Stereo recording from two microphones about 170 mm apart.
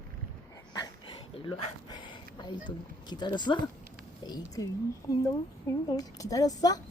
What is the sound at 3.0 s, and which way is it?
A woman's voice, 25° left (ahead or behind).